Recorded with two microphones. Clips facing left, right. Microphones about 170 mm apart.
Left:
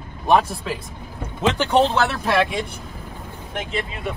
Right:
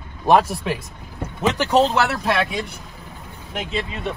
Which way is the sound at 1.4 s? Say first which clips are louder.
Even; 5° right (ahead or behind).